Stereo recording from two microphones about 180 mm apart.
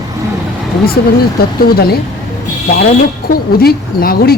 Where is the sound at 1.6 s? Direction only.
60° left (ahead or behind).